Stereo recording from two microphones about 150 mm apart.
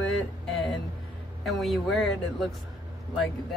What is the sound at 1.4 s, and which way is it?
Speech, centre (ahead or behind).